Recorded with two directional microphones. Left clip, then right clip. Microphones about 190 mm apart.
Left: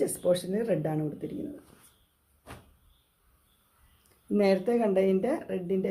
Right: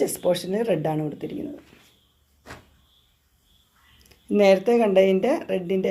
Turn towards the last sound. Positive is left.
turn(degrees=-15)  # may be behind; listen again after turning